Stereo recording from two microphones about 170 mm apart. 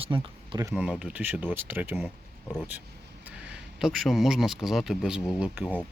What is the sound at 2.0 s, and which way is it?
Speech, centre (ahead or behind).